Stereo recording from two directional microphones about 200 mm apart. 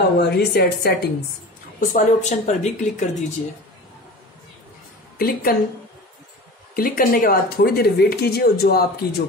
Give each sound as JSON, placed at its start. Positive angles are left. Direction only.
{"t": 0.2, "sound": "a woman's voice", "side_deg": 55}
{"t": 1.9, "sound": "speech", "side_deg": 35}
{"t": 5.1, "sound": "a woman's voice", "side_deg": 50}
{"t": 6.7, "sound": "speech", "side_deg": 45}